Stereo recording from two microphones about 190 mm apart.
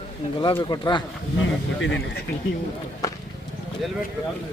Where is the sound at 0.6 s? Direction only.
25° left (ahead or behind).